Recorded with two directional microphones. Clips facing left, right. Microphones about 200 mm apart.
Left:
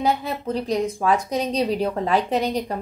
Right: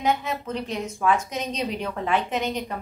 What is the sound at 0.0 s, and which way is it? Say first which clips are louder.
Speech: left 2 dB; 35° left (ahead or behind).